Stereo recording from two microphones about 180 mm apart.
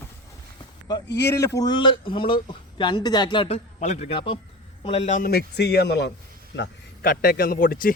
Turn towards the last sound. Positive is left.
turn(degrees=50)  # may be behind; listen again after turning